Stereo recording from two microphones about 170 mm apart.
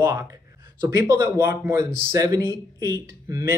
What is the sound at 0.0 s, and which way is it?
Speech, 15° right (ahead or behind).